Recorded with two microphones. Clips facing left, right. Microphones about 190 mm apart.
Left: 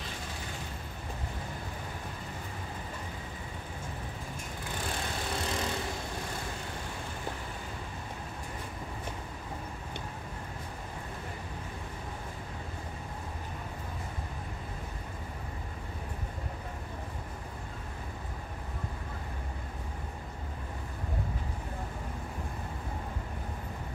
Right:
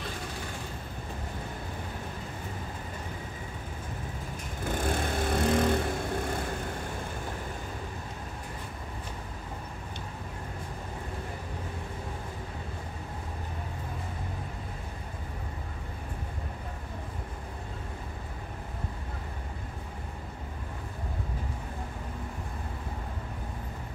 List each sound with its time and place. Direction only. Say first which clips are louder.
4.6 s vehicle: right 8 dB; 50° right (ahead or behind)